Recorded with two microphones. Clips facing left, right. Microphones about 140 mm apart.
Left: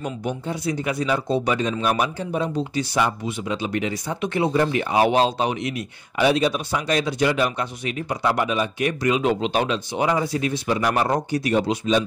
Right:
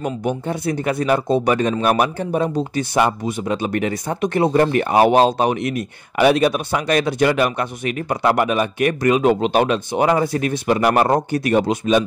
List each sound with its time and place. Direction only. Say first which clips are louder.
0.0 s speech: right 5 dB; 50° right (ahead or behind)